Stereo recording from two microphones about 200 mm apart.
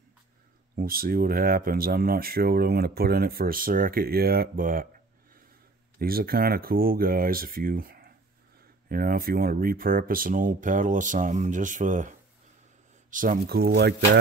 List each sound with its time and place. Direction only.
0.7 s speech: 45° right (ahead or behind)
5.9 s speech: 50° right (ahead or behind)
13.1 s speech: 45° right (ahead or behind)